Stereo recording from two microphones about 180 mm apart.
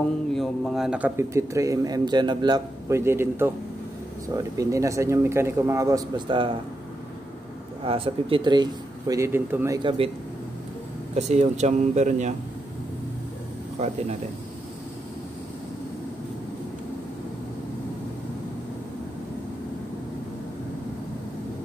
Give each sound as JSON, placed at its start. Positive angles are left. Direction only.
{"t": 0.3, "sound": "speech", "side_deg": 0}
{"t": 7.8, "sound": "speech", "side_deg": -30}
{"t": 9.8, "sound": "speech", "side_deg": -30}
{"t": 11.1, "sound": "speech", "side_deg": -40}